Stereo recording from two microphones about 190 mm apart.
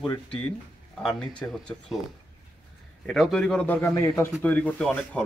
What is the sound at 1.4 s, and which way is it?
Speech, 5° left (ahead or behind).